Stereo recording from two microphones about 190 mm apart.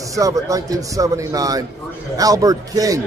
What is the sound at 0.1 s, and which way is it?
A man's voice, 20° right (ahead or behind).